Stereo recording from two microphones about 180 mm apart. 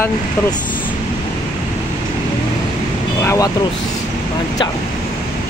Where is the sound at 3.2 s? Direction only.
20° left (ahead or behind).